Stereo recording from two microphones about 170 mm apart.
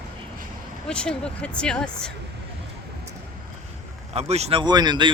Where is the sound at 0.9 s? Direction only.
5° left (ahead or behind).